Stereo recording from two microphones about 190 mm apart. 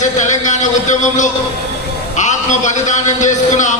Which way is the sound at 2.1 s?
40° left (ahead or behind).